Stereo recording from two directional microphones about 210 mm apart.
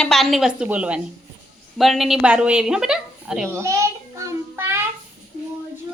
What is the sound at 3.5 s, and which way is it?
Child singing, 15° right (ahead or behind).